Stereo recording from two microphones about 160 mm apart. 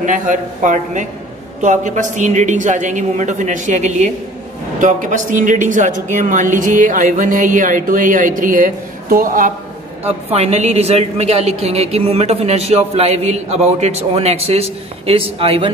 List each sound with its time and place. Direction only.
0.0 s a man's voice: 55° right (ahead or behind)
10.0 s a woman's voice: 40° right (ahead or behind)